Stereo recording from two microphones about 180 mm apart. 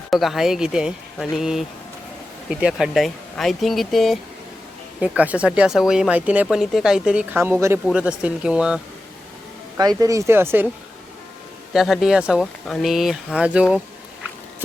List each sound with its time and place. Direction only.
0.1 s speech: centre (ahead or behind)
9.7 s speech: 20° right (ahead or behind)
11.7 s speech: centre (ahead or behind)